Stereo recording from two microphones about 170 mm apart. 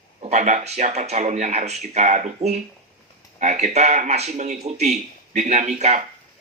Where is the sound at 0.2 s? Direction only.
40° right (ahead or behind).